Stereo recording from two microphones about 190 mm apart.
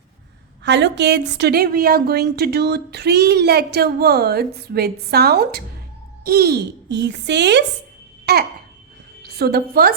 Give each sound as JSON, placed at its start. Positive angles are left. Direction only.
{"t": 0.6, "sound": "a woman's voice", "side_deg": -65}